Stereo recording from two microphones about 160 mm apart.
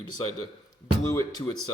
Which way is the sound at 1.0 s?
20° left (ahead or behind).